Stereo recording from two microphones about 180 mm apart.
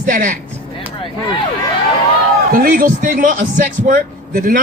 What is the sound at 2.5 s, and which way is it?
A man's voice, 50° right (ahead or behind).